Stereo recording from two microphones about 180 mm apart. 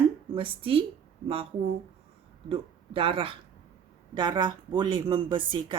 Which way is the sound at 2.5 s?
30° right (ahead or behind).